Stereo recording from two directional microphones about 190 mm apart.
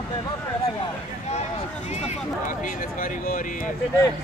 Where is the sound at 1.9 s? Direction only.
40° left (ahead or behind).